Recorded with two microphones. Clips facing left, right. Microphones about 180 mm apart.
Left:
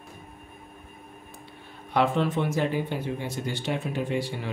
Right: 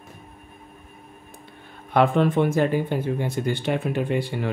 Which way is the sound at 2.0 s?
55° right (ahead or behind).